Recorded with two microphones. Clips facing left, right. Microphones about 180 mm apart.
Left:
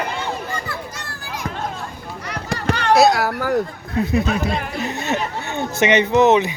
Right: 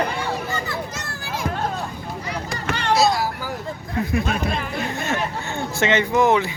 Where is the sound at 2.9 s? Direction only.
60° left (ahead or behind).